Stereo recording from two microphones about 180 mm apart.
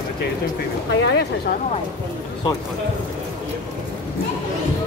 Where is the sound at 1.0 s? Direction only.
70° left (ahead or behind).